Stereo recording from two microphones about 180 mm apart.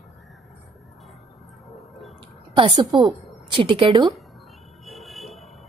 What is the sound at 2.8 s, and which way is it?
A woman's voice, 25° right (ahead or behind).